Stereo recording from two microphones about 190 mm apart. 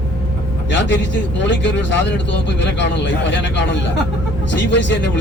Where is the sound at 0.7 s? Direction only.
70° left (ahead or behind).